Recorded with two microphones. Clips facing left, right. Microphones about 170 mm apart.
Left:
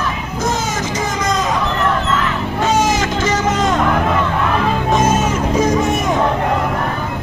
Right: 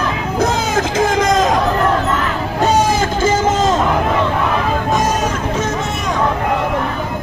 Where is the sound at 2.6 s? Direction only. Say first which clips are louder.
Right 2 dB; 30° right (ahead or behind).